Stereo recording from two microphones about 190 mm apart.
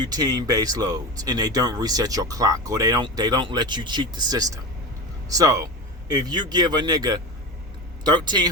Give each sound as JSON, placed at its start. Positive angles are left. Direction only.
{"t": 0.0, "sound": "speech", "side_deg": -20}